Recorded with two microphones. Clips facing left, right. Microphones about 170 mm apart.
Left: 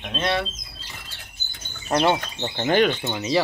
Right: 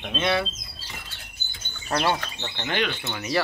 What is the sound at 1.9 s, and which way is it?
Speech, 20° left (ahead or behind).